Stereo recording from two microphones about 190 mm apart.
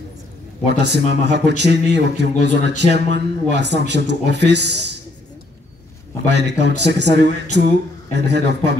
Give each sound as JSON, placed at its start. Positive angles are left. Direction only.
{"t": 0.7, "sound": "speech", "side_deg": -60}
{"t": 6.2, "sound": "speech", "side_deg": -65}